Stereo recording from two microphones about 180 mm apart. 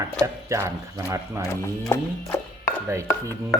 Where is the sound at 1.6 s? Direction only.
15° left (ahead or behind).